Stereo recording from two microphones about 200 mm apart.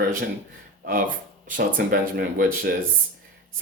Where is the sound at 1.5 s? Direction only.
45° right (ahead or behind).